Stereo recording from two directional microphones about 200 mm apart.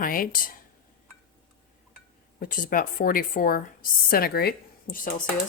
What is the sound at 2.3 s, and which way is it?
Speech, 45° left (ahead or behind).